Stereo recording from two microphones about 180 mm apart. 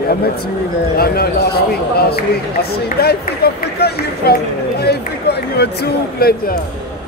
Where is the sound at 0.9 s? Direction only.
60° left (ahead or behind).